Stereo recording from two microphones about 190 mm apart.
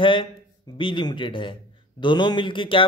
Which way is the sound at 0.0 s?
25° left (ahead or behind).